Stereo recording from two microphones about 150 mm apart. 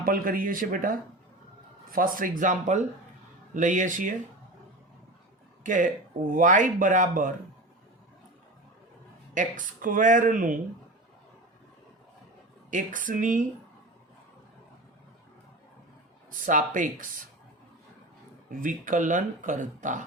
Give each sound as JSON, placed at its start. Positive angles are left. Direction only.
{"t": 0.0, "sound": "speech", "side_deg": -70}
{"t": 5.6, "sound": "speech", "side_deg": -60}
{"t": 9.3, "sound": "speech", "side_deg": -60}
{"t": 12.7, "sound": "speech", "side_deg": -60}
{"t": 16.5, "sound": "speech", "side_deg": -60}
{"t": 18.6, "sound": "speech", "side_deg": -60}